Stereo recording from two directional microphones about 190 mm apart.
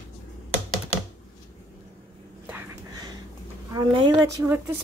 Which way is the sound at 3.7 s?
20° right (ahead or behind).